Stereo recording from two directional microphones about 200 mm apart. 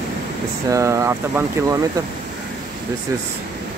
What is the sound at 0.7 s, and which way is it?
Speech, 15° right (ahead or behind).